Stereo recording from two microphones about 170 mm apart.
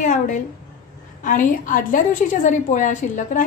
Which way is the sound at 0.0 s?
45° left (ahead or behind).